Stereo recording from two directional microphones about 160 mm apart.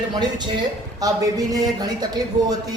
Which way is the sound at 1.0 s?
25° right (ahead or behind).